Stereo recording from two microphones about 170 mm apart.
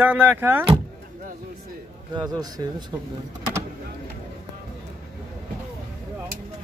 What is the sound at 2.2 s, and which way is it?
Speech, 25° right (ahead or behind).